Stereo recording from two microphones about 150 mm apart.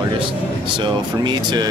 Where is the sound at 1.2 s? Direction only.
30° right (ahead or behind).